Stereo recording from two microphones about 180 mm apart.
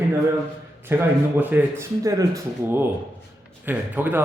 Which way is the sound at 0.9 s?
10° right (ahead or behind).